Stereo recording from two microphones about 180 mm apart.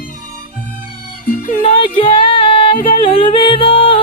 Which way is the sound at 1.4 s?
30° left (ahead or behind).